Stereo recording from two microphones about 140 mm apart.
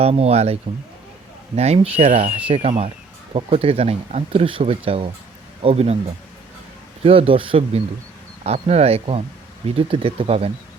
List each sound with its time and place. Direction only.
0.0 s speech: 45° right (ahead or behind)
2.0 s speech: 65° right (ahead or behind)
2.5 s speech: 50° right (ahead or behind)
7.0 s speech: 40° right (ahead or behind)
8.4 s speech: 50° right (ahead or behind)